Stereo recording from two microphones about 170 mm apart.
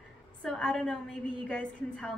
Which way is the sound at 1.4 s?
5° left (ahead or behind).